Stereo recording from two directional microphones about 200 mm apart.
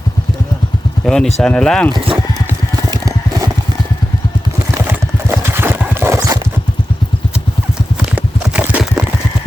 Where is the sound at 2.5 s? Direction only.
15° right (ahead or behind).